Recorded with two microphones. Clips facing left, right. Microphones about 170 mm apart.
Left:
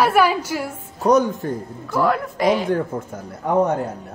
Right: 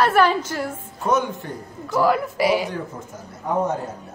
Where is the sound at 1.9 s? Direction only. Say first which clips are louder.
Right 1 dB; centre (ahead or behind).